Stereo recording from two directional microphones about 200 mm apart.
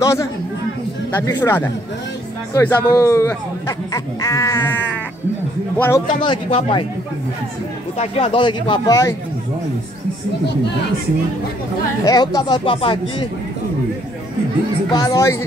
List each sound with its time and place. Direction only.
0.0 s a man's voice: 15° left (ahead or behind)
6.2 s speech: 25° left (ahead or behind)
8.0 s speech: 30° left (ahead or behind)
12.0 s speech: 20° left (ahead or behind)
14.9 s speech: 20° left (ahead or behind)